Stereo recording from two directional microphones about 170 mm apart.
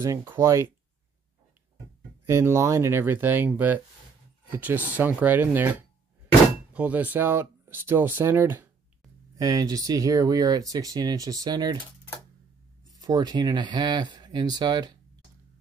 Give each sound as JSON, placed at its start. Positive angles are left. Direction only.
{"t": 0.0, "sound": "speech", "side_deg": -15}
{"t": 2.2, "sound": "speech", "side_deg": -15}
{"t": 9.4, "sound": "speech", "side_deg": -20}
{"t": 13.0, "sound": "speech", "side_deg": -25}